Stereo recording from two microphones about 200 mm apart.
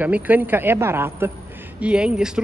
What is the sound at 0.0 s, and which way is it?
A woman's voice, 10° right (ahead or behind).